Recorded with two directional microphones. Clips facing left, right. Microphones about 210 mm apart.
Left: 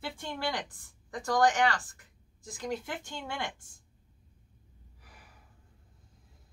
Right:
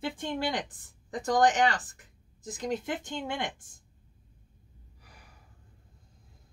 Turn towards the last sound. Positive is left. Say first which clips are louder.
# right 1 dB
turn(degrees=0)  # may be behind; listen again after turning